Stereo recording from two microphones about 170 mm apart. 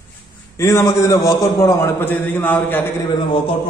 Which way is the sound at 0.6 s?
20° left (ahead or behind).